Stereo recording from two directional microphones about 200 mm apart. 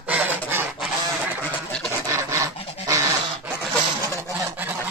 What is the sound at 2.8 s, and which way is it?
Dog, 15° right (ahead or behind).